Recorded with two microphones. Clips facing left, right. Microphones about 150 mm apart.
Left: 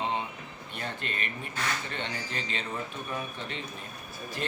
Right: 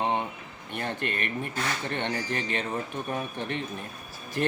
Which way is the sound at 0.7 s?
55° right (ahead or behind).